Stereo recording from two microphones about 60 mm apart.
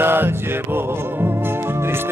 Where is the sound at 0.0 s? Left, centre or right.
Right.